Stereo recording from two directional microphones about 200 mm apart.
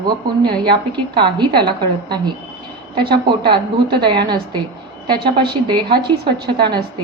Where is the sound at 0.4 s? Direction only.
25° right (ahead or behind).